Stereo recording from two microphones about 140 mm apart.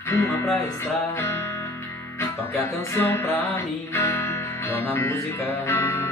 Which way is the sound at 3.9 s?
20° left (ahead or behind).